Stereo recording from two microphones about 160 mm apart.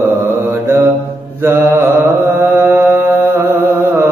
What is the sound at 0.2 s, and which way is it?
Mantra, 15° right (ahead or behind).